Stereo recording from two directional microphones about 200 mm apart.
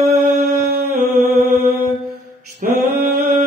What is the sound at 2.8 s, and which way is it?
Mantra, 55° right (ahead or behind).